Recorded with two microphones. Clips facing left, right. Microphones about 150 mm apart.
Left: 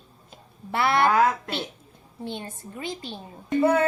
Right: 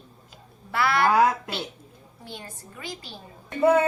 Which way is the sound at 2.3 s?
25° left (ahead or behind).